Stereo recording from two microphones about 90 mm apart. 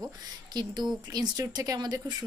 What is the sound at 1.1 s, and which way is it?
A woman's voice, 45° right (ahead or behind).